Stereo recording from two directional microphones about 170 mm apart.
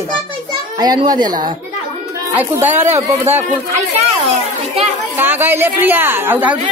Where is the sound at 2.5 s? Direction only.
15° right (ahead or behind).